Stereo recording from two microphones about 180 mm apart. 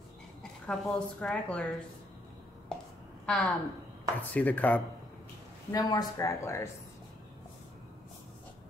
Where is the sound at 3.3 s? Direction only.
5° left (ahead or behind).